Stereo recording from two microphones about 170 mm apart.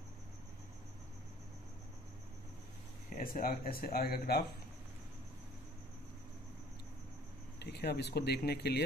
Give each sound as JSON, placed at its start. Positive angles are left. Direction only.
{"t": 3.1, "sound": "speech", "side_deg": 55}
{"t": 7.5, "sound": "speech", "side_deg": 75}